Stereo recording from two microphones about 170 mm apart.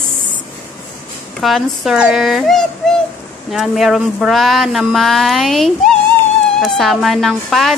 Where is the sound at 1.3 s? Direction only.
Centre (ahead or behind).